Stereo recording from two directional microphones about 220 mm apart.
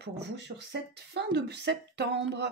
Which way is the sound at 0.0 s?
50° right (ahead or behind).